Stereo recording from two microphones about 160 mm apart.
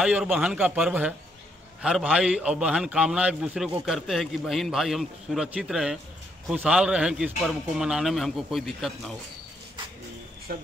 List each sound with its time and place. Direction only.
0.0 s a man's voice: 5° right (ahead or behind)
10.5 s speech: 65° right (ahead or behind)